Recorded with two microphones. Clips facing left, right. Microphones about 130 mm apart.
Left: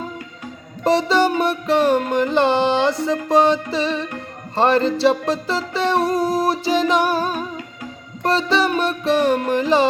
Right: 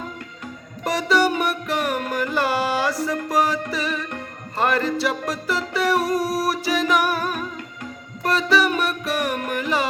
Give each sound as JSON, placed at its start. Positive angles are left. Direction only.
{"t": 0.9, "sound": "music", "side_deg": 25}